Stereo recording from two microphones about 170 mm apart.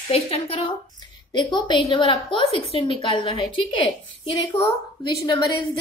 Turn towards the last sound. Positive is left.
turn(degrees=25)  # may be behind; listen again after turning